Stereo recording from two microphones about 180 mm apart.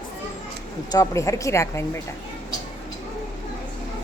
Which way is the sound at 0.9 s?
20° left (ahead or behind).